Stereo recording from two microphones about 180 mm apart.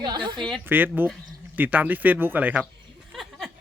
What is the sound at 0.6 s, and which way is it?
Speech, 10° right (ahead or behind).